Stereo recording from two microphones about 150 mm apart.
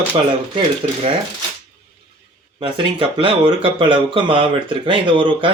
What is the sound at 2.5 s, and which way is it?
Speech, 35° right (ahead or behind).